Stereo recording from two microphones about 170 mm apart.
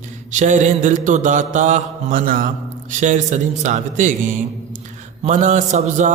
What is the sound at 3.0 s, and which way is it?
Speech, 45° right (ahead or behind).